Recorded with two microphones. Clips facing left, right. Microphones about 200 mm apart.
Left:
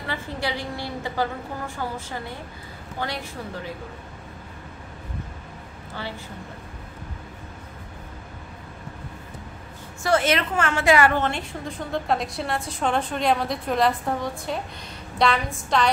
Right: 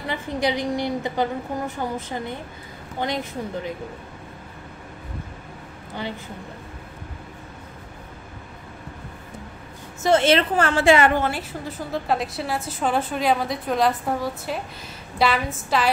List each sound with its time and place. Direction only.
0.0 s a woman's voice: 20° right (ahead or behind)
10.0 s a woman's voice: 25° right (ahead or behind)
11.1 s a woman's voice: 5° right (ahead or behind)